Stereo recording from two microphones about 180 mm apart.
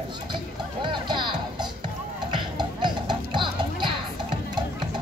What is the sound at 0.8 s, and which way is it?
Music, 25° right (ahead or behind).